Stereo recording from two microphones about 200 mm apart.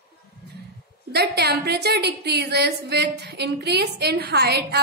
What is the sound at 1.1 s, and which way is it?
A woman's voice, 55° right (ahead or behind).